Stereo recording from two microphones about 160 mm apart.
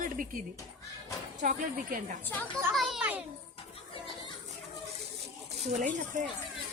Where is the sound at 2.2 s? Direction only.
10° left (ahead or behind).